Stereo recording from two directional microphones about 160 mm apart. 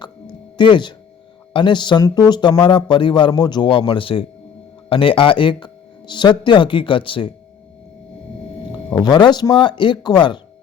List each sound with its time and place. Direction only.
0.5 s a man's voice: 30° left (ahead or behind)
9.0 s a man's voice: 25° left (ahead or behind)